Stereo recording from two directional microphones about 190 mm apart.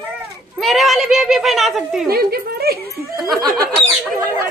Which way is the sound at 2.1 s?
55° right (ahead or behind).